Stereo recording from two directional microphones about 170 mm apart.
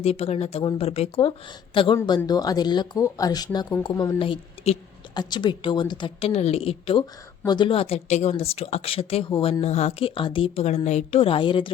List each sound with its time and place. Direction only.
0.0 s speech: 35° left (ahead or behind)